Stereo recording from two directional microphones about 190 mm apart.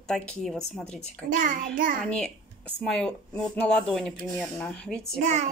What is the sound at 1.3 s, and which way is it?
Child singing, 45° right (ahead or behind).